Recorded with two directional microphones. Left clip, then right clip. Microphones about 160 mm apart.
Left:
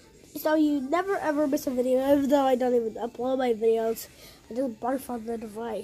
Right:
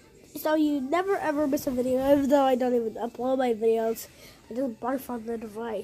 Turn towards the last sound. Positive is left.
turn(degrees=0)  # may be behind; listen again after turning